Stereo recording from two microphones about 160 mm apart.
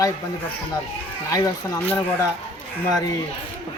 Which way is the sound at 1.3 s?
20° left (ahead or behind).